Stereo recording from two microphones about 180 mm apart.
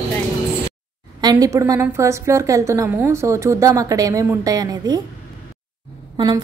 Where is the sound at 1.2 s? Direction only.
20° right (ahead or behind).